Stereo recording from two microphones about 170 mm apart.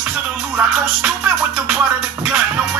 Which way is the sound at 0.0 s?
5° right (ahead or behind).